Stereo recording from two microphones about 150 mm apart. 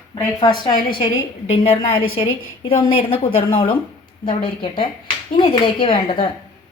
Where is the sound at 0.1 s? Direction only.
30° left (ahead or behind).